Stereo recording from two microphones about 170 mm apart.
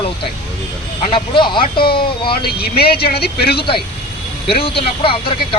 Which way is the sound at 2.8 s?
65° left (ahead or behind).